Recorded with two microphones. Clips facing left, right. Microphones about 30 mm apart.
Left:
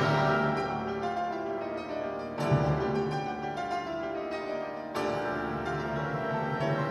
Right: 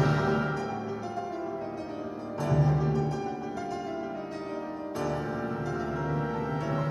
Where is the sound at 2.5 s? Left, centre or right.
Left.